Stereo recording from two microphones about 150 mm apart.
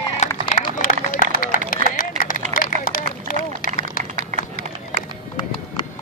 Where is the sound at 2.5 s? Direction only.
70° left (ahead or behind).